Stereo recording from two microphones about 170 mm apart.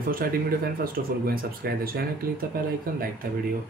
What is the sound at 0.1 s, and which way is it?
Speech, 60° right (ahead or behind).